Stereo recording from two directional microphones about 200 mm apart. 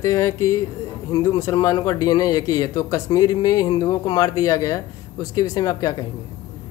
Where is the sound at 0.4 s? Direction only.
90° left.